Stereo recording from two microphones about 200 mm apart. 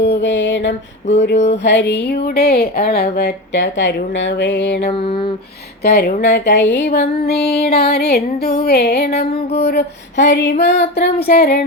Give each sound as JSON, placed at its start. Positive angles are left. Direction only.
{"t": 0.0, "sound": "speech", "side_deg": 60}
{"t": 4.9, "sound": "a sound", "side_deg": 25}
{"t": 5.8, "sound": "music", "side_deg": 55}